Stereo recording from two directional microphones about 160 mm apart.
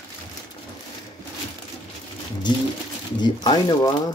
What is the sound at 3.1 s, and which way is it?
Speech, 30° left (ahead or behind).